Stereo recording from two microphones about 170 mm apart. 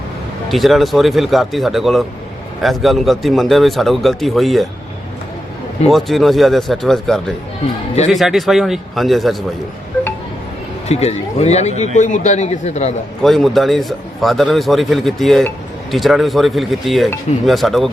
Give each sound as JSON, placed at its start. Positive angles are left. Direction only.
{"t": 0.4, "sound": "a man's voice", "side_deg": 0}
{"t": 5.9, "sound": "a man's voice", "side_deg": 0}
{"t": 10.8, "sound": "a man's voice", "side_deg": 40}
{"t": 13.2, "sound": "a man's voice", "side_deg": 0}